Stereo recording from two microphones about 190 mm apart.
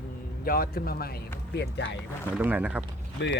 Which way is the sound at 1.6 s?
65° left (ahead or behind).